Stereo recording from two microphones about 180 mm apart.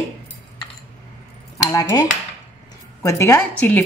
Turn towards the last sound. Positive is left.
turn(degrees=10)  # may be behind; listen again after turning